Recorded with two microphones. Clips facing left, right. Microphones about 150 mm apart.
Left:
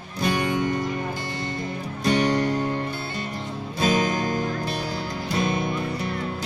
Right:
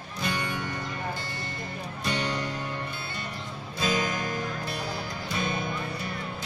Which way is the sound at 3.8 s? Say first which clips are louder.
Left 6 dB; 45° left (ahead or behind).